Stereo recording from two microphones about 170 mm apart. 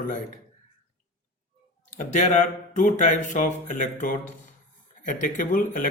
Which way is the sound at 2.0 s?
45° left (ahead or behind).